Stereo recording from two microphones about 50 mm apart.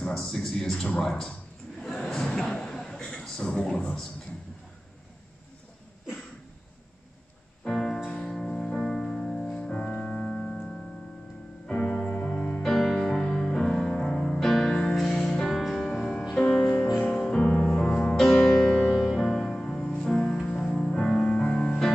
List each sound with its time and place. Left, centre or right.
0.0 s a man's voice: centre
1.8 s a sound: centre
2.9 s a man's voice: centre
7.6 s music: centre
9.5 s music: left
14.7 s music: centre
15.0 s music: centre; by 18.1 s left
18.1 s music: centre
18.8 s music: centre